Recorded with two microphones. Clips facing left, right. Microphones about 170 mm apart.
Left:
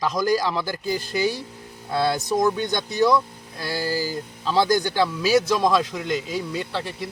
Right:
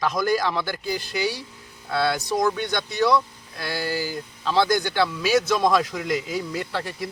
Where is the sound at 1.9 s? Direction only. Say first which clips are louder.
Left 1 dB; 15° left (ahead or behind).